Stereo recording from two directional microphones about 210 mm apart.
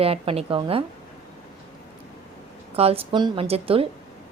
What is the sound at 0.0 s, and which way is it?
Speech, 25° right (ahead or behind).